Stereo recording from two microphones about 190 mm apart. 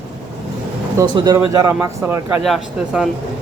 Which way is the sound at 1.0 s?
20° right (ahead or behind).